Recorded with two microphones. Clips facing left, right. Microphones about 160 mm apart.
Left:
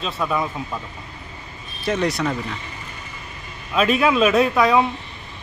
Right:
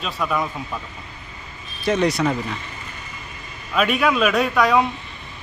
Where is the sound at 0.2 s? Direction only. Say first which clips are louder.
Even; 5° left (ahead or behind).